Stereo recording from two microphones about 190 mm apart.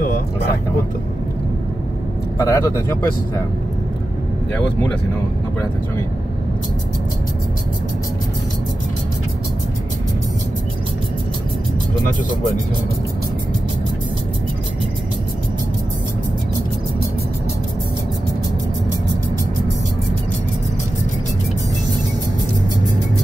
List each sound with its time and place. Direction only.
2.3 s speech: 15° left (ahead or behind)